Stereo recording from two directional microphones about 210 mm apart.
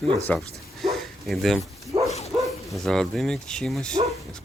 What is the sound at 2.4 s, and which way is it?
Speech, centre (ahead or behind).